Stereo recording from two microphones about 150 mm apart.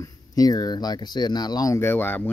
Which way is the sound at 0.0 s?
25° left (ahead or behind).